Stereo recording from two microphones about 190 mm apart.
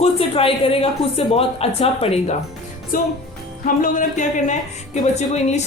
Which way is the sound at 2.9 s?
45° left (ahead or behind).